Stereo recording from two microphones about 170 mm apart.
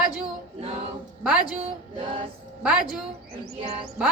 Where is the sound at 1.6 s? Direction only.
35° right (ahead or behind).